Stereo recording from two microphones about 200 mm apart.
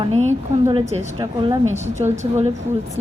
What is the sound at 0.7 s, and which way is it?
Speech, 35° right (ahead or behind).